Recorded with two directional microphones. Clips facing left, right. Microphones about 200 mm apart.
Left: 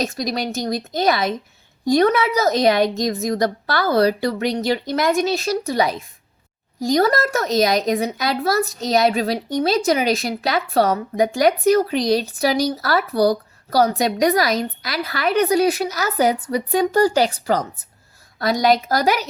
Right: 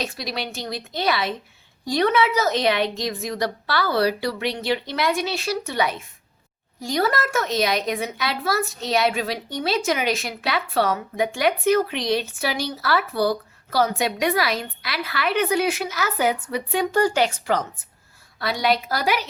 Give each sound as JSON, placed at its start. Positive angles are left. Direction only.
{"t": 0.0, "sound": "speech", "side_deg": 40}